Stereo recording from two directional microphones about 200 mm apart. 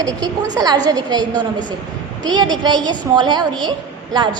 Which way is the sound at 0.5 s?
20° right (ahead or behind).